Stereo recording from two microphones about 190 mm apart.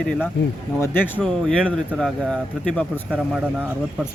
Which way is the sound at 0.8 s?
10° left (ahead or behind).